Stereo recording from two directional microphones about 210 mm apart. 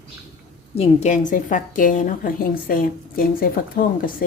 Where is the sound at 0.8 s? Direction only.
35° left (ahead or behind).